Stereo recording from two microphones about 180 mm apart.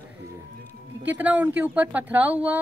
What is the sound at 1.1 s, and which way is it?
Speech, 10° right (ahead or behind).